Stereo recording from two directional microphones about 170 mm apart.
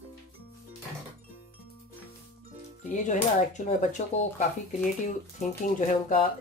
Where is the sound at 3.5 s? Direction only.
45° left (ahead or behind).